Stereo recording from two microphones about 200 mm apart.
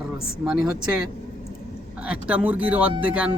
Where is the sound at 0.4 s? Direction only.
Centre (ahead or behind).